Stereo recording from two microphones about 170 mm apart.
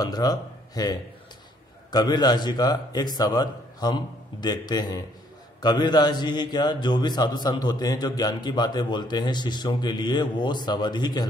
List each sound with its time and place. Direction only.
0.0 s a man's voice: 25° left (ahead or behind)